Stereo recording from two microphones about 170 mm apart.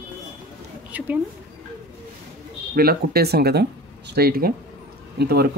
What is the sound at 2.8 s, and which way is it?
Speech, 65° right (ahead or behind).